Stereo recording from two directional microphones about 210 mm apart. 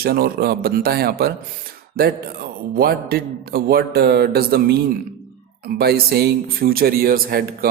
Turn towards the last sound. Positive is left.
turn(degrees=-45)  # may be behind; listen again after turning